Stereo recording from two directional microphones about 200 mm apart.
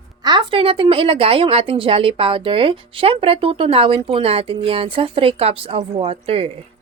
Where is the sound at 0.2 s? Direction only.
20° right (ahead or behind).